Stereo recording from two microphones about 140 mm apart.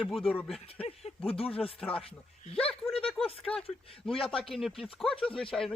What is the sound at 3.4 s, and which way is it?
Speech, 5° left (ahead or behind).